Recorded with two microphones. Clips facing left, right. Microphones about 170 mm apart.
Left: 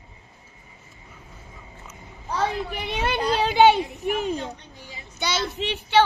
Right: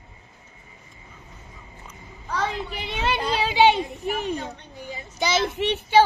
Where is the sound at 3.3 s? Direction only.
50° left (ahead or behind).